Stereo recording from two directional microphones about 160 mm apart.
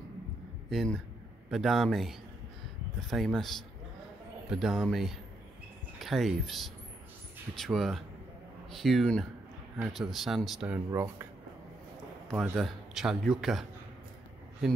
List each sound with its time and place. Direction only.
0.7 s a man's voice: centre (ahead or behind)
10.9 s speech: 15° right (ahead or behind)
12.3 s a man's voice: centre (ahead or behind)